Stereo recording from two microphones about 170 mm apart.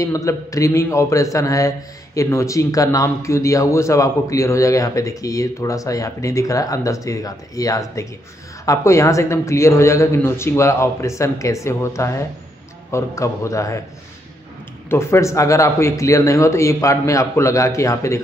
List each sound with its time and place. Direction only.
0.0 s a man's voice: 20° left (ahead or behind)
14.9 s speech: 15° left (ahead or behind)